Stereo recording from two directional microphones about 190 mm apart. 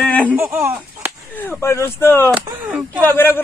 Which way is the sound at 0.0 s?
5° left (ahead or behind).